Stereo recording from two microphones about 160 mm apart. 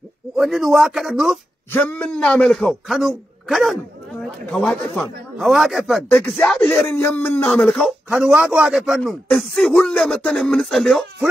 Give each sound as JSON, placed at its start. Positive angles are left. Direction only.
{"t": 0.4, "sound": "a man's voice", "side_deg": 0}
{"t": 1.7, "sound": "a man's voice", "side_deg": 10}
{"t": 7.0, "sound": "speech", "side_deg": 15}
{"t": 7.5, "sound": "a man's voice", "side_deg": 5}